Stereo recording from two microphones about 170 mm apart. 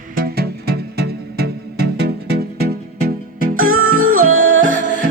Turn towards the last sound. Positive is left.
turn(degrees=-50)  # may be behind; listen again after turning